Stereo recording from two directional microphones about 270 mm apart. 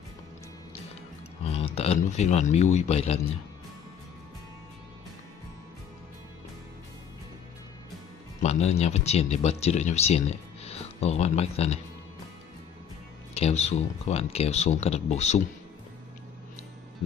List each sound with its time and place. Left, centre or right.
1.4 s speech: left
8.4 s speech: left
13.3 s speech: left